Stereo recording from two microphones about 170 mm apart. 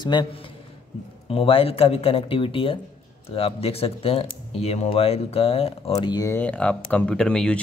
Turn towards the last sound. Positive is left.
turn(degrees=5)  # may be behind; listen again after turning